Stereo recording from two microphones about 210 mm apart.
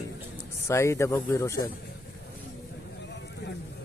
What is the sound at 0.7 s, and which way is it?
Speech, 15° left (ahead or behind).